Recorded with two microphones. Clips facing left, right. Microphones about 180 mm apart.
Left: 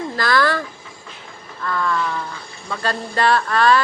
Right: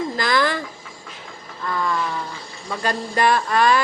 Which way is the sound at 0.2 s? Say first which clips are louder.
Left 3 dB; 15° right (ahead or behind).